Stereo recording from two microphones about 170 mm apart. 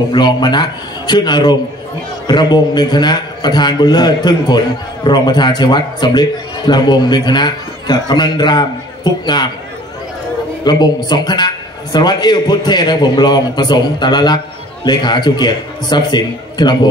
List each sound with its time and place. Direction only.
0.1 s a man's voice: 25° left (ahead or behind)
10.6 s a woman's voice: 25° left (ahead or behind)